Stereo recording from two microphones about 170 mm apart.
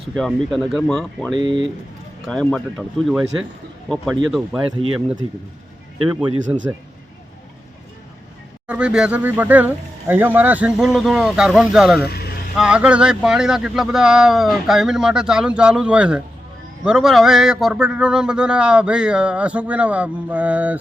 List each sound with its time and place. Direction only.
0.0 s speech: centre (ahead or behind)
1.3 s speech: 25° right (ahead or behind)
2.2 s speech: 5° left (ahead or behind)
6.5 s a man's voice: 15° right (ahead or behind)
8.6 s speech: 5° right (ahead or behind)
11.9 s vehicle: 70° left (ahead or behind)
12.5 s speech: 5° right (ahead or behind)